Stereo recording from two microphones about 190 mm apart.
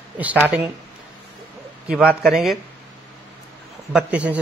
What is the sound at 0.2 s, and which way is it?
Speech, 10° right (ahead or behind).